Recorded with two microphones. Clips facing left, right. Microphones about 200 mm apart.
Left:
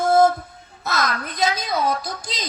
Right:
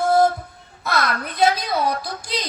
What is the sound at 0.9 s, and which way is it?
Female singing, 45° left (ahead or behind).